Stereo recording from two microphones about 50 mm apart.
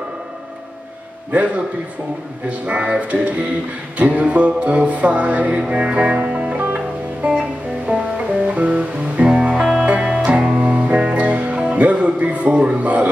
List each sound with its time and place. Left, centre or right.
1.3 s music: right
2.6 s music: right
10.5 s music: right